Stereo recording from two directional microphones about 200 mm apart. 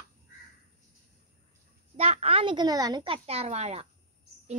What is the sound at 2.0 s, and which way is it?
A child's voice, 30° right (ahead or behind).